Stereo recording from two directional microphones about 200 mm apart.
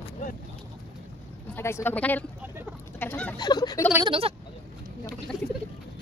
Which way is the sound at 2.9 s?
10° left (ahead or behind).